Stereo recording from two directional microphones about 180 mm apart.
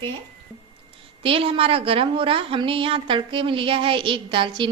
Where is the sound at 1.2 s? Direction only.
30° right (ahead or behind).